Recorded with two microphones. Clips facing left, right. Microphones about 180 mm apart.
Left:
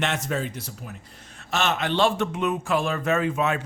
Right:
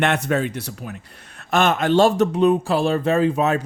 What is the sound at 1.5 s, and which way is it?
Speech, 50° right (ahead or behind).